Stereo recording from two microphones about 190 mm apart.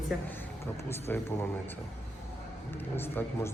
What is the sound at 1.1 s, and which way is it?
Speech, 10° left (ahead or behind).